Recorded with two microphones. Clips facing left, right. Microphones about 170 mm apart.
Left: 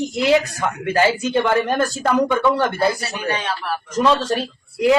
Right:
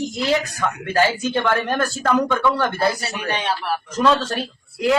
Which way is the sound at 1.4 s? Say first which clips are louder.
Left 1 dB; 10° left (ahead or behind).